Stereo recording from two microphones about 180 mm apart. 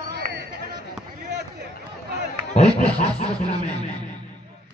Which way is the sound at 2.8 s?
35° left (ahead or behind).